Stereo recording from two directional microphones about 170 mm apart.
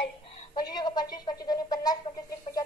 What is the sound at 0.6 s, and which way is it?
Speech, 25° left (ahead or behind).